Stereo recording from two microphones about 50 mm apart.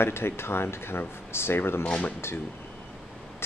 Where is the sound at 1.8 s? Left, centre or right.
Left.